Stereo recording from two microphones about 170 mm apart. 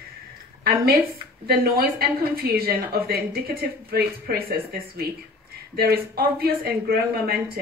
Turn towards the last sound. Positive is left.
turn(degrees=-65)  # may be behind; listen again after turning